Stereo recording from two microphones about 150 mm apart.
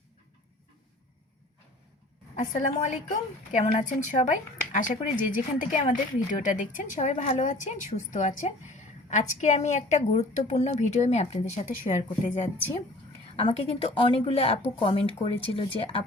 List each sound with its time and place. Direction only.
2.3 s a woman's voice: 55° left (ahead or behind)
13.3 s speech: 40° left (ahead or behind)